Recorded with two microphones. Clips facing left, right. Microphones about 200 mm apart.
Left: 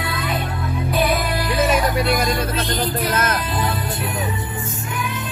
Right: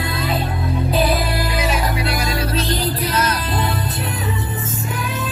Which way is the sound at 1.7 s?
50° left (ahead or behind).